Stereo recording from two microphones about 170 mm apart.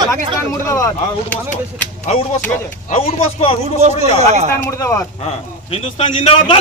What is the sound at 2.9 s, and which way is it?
Speech, 35° left (ahead or behind).